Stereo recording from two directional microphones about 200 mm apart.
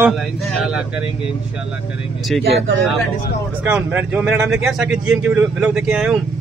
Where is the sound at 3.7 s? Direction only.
10° right (ahead or behind).